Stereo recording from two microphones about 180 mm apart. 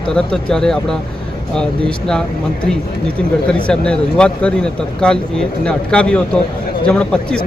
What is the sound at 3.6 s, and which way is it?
Speech, 5° left (ahead or behind).